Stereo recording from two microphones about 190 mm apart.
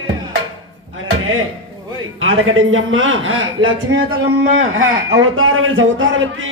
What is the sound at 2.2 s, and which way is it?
A man's voice, 90° right.